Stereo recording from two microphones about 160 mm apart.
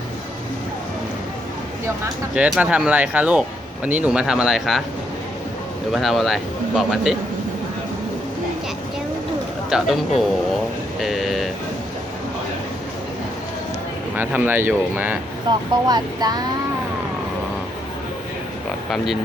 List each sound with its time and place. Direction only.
2.3 s speech: 5° right (ahead or behind)
5.9 s speech: centre (ahead or behind)
9.6 s speech: 5° right (ahead or behind)
14.2 s speech: 10° right (ahead or behind)
15.4 s speech: 25° right (ahead or behind)